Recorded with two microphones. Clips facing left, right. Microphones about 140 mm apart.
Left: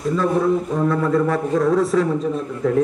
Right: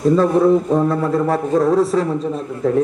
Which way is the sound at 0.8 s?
35° right (ahead or behind).